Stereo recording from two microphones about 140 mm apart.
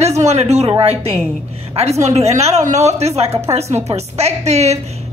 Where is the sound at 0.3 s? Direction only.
50° right (ahead or behind).